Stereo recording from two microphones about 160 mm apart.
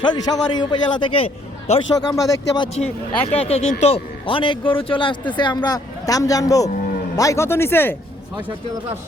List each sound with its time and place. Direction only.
0.0 s a man's voice: 25° left (ahead or behind)
2.0 s a man's voice: 25° left (ahead or behind)
2.7 s speech: 40° left (ahead or behind); by 7.9 s 15° left (ahead or behind)